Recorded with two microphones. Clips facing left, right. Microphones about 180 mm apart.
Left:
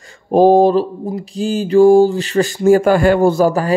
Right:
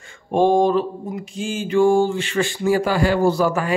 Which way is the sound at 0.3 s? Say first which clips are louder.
Left 6 dB; 35° left (ahead or behind).